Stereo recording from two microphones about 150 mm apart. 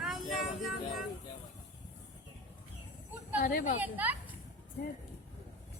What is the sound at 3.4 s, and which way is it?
Chatter, 70° left (ahead or behind).